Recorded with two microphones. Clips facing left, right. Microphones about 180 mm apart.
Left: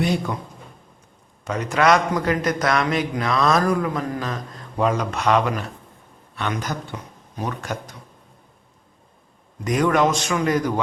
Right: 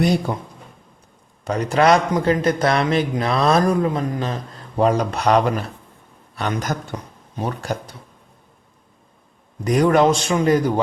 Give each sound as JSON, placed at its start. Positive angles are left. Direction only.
{"t": 0.0, "sound": "a man's voice", "side_deg": -35}
{"t": 1.5, "sound": "a man's voice", "side_deg": -35}
{"t": 9.6, "sound": "a man's voice", "side_deg": -35}